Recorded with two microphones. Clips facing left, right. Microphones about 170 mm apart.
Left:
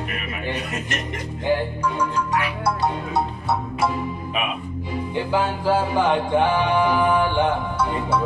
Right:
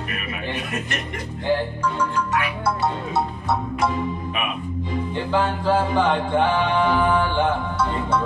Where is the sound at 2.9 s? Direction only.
10° left (ahead or behind).